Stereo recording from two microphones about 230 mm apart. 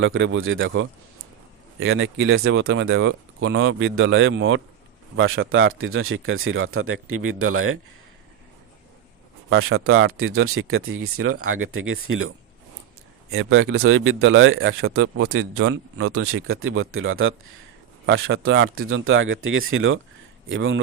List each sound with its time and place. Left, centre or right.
0.0 s speech: right
9.5 s speech: right
13.3 s speech: right